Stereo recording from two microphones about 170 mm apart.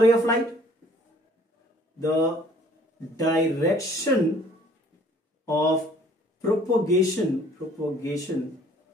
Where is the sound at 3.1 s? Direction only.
20° left (ahead or behind).